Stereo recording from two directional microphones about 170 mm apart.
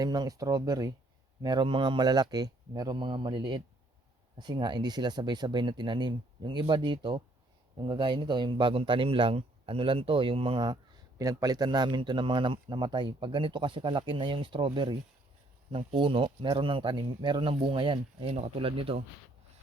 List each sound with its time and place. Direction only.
0.0 s speech: 25° right (ahead or behind)